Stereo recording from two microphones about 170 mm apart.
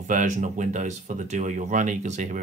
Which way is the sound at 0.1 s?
45° right (ahead or behind).